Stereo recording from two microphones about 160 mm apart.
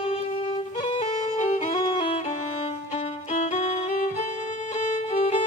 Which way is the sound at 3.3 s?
45° left (ahead or behind).